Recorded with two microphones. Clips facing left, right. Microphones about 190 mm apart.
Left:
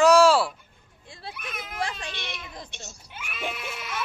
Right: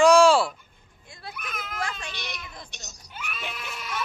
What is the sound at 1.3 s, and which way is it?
Speech, 30° left (ahead or behind).